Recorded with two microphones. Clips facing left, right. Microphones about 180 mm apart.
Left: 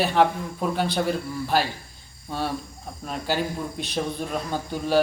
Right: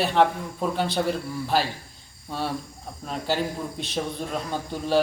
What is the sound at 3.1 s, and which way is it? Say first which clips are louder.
A man's voice: even; centre (ahead or behind).